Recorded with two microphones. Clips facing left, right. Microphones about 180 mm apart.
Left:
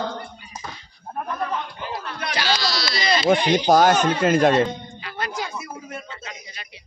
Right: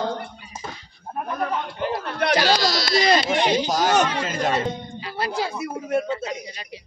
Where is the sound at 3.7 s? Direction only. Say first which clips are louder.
Left 4 dB; 60° left (ahead or behind).